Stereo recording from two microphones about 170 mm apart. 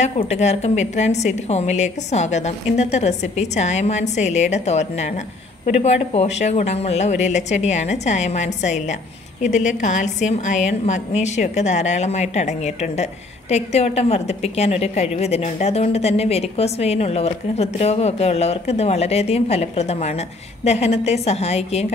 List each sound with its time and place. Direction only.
0.0 s a woman's voice: 40° left (ahead or behind)